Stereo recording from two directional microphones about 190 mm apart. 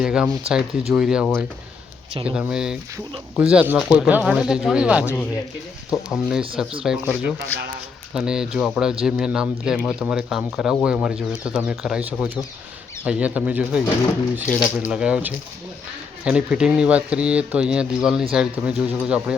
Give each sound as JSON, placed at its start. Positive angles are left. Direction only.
{"t": 0.0, "sound": "speech", "side_deg": -5}
{"t": 14.8, "sound": "speech", "side_deg": -5}